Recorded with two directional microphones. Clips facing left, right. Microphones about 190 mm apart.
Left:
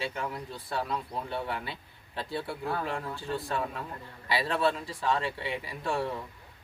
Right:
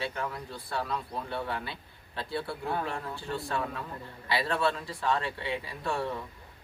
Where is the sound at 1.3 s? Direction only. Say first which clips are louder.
Right 1 dB; 15° left (ahead or behind).